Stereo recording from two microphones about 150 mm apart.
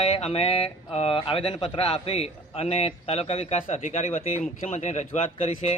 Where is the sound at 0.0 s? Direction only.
40° left (ahead or behind).